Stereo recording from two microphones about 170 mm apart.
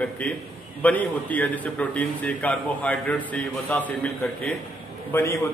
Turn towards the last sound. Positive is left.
turn(degrees=15)  # may be behind; listen again after turning